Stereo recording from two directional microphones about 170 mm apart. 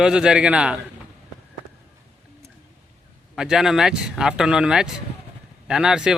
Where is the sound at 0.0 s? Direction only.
5° right (ahead or behind).